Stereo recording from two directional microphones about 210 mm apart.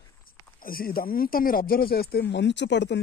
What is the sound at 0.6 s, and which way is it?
Speech, 45° left (ahead or behind).